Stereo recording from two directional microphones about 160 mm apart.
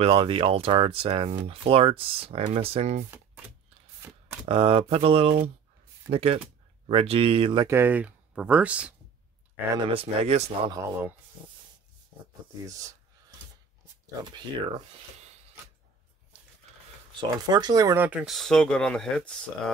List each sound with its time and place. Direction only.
0.0 s speech: 35° right (ahead or behind)
3.1 s typewriter: 10° right (ahead or behind)
4.5 s speech: 35° right (ahead or behind)
7.6 s speech: 15° right (ahead or behind)
9.8 s speech: 40° right (ahead or behind)
10.7 s speech: 20° right (ahead or behind)
17.2 s speech: 25° right (ahead or behind)
18.0 s speech: 5° right (ahead or behind)